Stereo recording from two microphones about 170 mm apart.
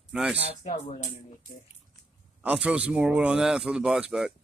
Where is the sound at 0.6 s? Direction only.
45° left (ahead or behind).